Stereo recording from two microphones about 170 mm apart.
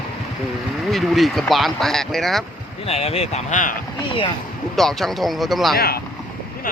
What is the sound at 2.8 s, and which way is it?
Speech, 35° left (ahead or behind).